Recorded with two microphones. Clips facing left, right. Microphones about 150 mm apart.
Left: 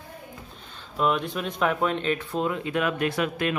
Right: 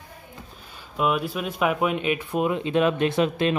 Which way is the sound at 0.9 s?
5° right (ahead or behind).